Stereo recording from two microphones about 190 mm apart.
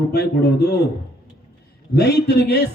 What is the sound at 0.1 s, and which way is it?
Speech, 55° left (ahead or behind).